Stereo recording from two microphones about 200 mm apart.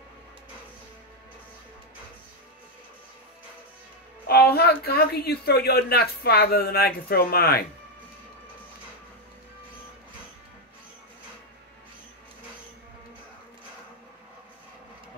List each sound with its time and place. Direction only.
4.3 s speech: 50° left (ahead or behind)